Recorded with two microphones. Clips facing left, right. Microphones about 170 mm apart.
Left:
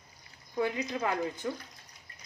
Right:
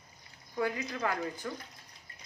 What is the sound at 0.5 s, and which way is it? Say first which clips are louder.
Speech: left 2 dB; 20° left (ahead or behind).